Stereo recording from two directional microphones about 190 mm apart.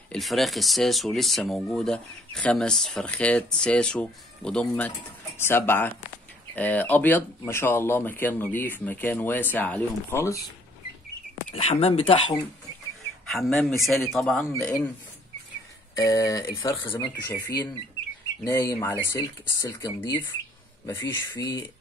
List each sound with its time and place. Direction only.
0.1 s speech: centre (ahead or behind)
11.5 s speech: 35° left (ahead or behind)
13.3 s speech: centre (ahead or behind)
16.0 s speech: 15° left (ahead or behind)